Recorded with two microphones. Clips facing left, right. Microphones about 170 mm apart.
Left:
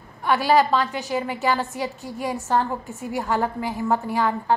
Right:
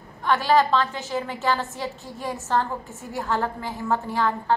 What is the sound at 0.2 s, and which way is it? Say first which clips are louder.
A woman's voice: left 1 dB; 10° left (ahead or behind).